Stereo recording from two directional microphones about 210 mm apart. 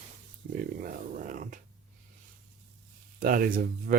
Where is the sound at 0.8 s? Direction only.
40° right (ahead or behind).